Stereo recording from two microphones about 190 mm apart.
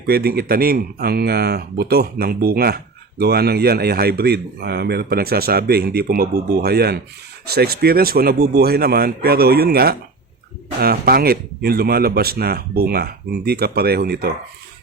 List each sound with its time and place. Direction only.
0.0 s speech: 55° right (ahead or behind)